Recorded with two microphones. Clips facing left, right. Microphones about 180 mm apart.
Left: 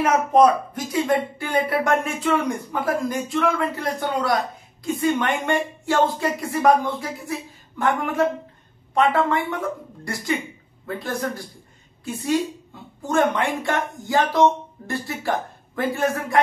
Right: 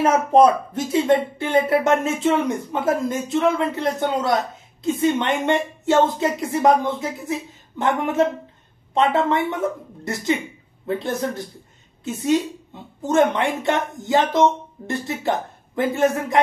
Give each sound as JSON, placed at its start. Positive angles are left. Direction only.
{"t": 0.0, "sound": "a woman's voice", "side_deg": -25}